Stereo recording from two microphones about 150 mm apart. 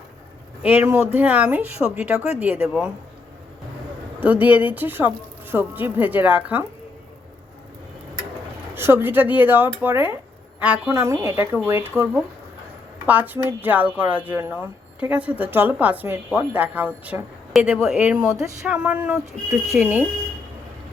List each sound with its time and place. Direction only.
0.6 s a woman's voice: 10° right (ahead or behind)
4.2 s a woman's voice: 10° right (ahead or behind)
8.7 s a woman's voice: 15° right (ahead or behind)